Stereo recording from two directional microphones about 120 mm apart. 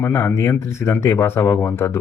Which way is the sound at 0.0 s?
20° left (ahead or behind).